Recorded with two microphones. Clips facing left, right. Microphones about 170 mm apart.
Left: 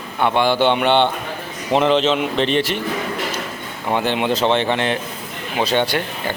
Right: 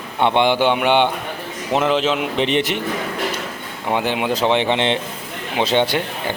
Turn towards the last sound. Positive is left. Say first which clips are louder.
# right 1 dB
turn(degrees=-20)  # may be behind; listen again after turning